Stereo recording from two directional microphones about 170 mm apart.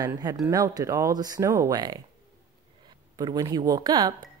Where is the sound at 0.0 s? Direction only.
20° right (ahead or behind).